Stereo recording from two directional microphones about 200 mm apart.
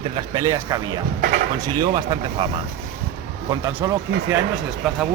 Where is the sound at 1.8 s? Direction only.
25° right (ahead or behind).